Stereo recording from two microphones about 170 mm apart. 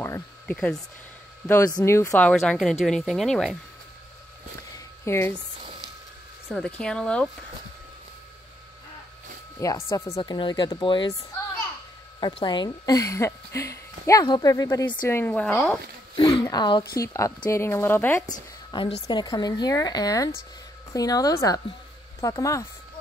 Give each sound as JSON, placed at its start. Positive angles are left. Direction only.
{"t": 0.0, "sound": "a sound", "side_deg": 15}
{"t": 1.5, "sound": "speech", "side_deg": 20}
{"t": 4.7, "sound": "a sound", "side_deg": 15}
{"t": 6.5, "sound": "speech", "side_deg": 5}
{"t": 9.6, "sound": "a woman's voice", "side_deg": 15}
{"t": 12.2, "sound": "a woman's voice", "side_deg": 25}
{"t": 16.4, "sound": "a woman's voice", "side_deg": 25}
{"t": 18.2, "sound": "a woman's voice", "side_deg": 25}